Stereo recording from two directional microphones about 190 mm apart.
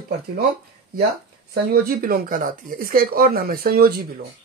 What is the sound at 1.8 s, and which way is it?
Speech, 50° right (ahead or behind).